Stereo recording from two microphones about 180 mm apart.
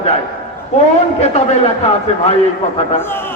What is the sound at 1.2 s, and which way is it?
A man's voice, 35° left (ahead or behind).